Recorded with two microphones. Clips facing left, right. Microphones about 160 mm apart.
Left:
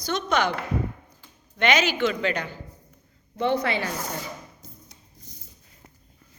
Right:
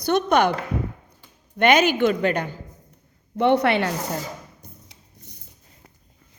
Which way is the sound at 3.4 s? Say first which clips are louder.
Right 6 dB; 65° right (ahead or behind).